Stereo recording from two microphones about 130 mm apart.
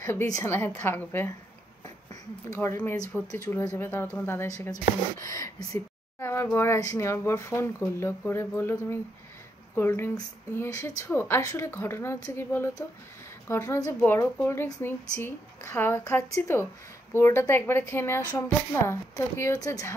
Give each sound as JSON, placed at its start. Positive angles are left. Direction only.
{"t": 0.0, "sound": "a woman's voice", "side_deg": 20}
{"t": 2.5, "sound": "a woman's voice", "side_deg": 20}